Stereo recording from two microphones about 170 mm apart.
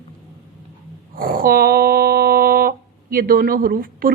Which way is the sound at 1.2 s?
55° right (ahead or behind).